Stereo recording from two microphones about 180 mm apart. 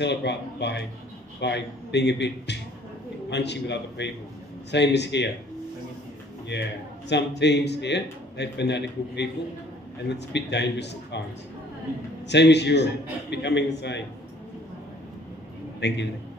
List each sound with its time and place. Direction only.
0.0 s speech: 70° left (ahead or behind)
7.1 s speech: 70° left (ahead or behind)
12.3 s speech: 70° left (ahead or behind)
15.8 s speech: 70° left (ahead or behind)